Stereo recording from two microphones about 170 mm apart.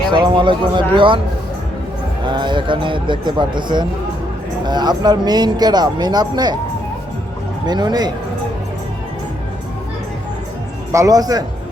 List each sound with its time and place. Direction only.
0.1 s speech: 30° right (ahead or behind)
2.2 s speech: 25° right (ahead or behind)
7.7 s speech: 25° right (ahead or behind)
10.9 s speech: 20° right (ahead or behind)